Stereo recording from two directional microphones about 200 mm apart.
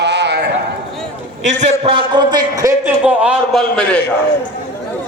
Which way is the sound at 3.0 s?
5° right (ahead or behind).